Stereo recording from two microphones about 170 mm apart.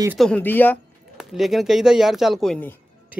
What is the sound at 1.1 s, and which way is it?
Speech, centre (ahead or behind).